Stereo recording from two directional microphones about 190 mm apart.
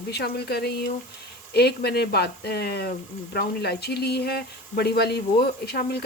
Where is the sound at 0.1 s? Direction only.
60° left (ahead or behind).